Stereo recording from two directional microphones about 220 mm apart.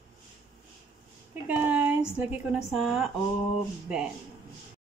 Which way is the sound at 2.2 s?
5° right (ahead or behind).